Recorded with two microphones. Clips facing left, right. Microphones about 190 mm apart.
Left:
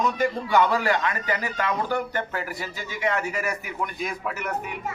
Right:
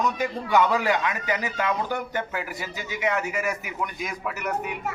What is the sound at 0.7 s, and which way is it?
Speech, 15° right (ahead or behind).